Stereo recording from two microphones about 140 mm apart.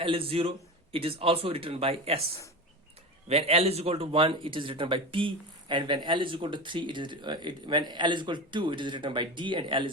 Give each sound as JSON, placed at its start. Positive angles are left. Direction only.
{"t": 0.0, "sound": "speech", "side_deg": -40}
{"t": 3.2, "sound": "speech", "side_deg": -45}